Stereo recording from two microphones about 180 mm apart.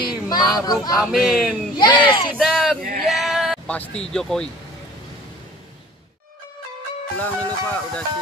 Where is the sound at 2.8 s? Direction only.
50° right (ahead or behind).